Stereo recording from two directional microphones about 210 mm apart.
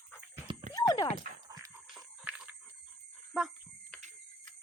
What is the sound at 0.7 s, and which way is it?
Horse, 20° left (ahead or behind).